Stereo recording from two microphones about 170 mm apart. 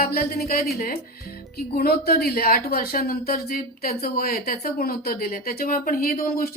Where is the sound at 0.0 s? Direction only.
60° left (ahead or behind).